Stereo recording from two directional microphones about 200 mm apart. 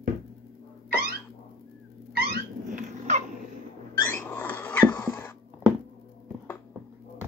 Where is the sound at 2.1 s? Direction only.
50° right (ahead or behind).